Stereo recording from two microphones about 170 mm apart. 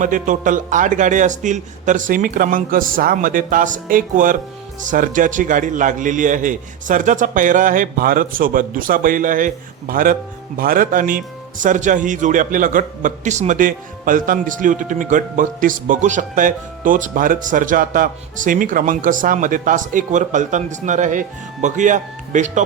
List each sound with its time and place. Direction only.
0.0 s a man's voice: 50° right (ahead or behind)